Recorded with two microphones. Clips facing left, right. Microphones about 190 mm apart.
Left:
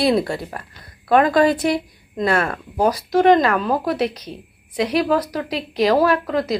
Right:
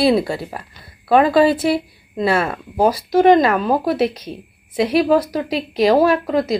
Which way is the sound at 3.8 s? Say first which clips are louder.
Right 3 dB; 25° right (ahead or behind).